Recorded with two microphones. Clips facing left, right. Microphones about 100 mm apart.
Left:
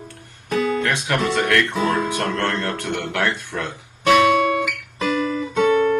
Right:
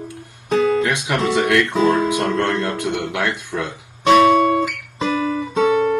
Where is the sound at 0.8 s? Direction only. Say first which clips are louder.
Right 2 dB; 15° right (ahead or behind).